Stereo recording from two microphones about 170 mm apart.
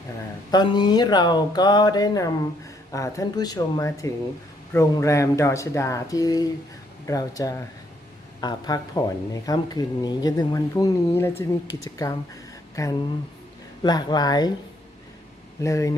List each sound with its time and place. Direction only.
0.5 s speech: 25° left (ahead or behind)
15.6 s speech: 20° left (ahead or behind)